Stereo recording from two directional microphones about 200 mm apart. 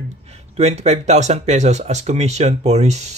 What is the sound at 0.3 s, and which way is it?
Speech, 35° right (ahead or behind).